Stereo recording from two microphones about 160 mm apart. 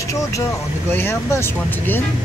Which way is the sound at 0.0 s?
20° left (ahead or behind).